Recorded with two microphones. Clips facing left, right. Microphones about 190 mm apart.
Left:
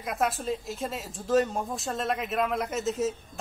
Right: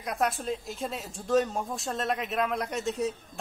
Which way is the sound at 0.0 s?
Centre (ahead or behind).